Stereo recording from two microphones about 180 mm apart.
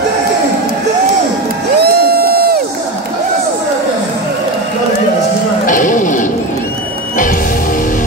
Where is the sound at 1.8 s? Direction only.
60° right (ahead or behind).